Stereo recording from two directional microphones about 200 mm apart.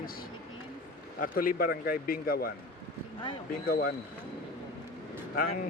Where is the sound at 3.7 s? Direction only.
45° left (ahead or behind).